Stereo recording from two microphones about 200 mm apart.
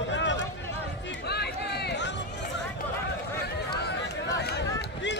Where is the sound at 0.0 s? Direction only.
65° left (ahead or behind).